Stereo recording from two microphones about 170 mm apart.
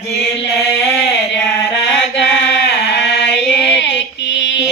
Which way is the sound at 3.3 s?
90° left.